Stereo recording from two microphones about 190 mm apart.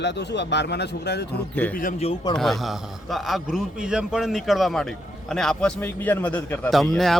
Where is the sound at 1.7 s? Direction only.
45° left (ahead or behind).